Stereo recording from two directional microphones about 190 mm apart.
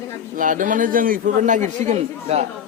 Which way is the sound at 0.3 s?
45° right (ahead or behind).